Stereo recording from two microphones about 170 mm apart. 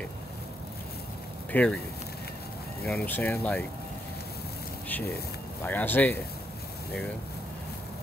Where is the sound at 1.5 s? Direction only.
5° left (ahead or behind).